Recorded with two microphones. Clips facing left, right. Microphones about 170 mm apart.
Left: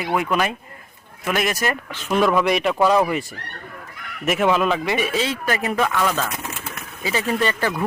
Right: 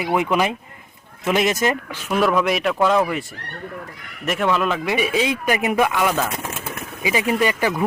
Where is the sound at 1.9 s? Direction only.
5° right (ahead or behind).